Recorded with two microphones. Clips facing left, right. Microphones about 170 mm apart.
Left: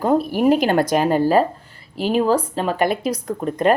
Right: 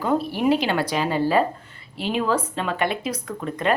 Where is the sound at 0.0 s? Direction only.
45° left (ahead or behind).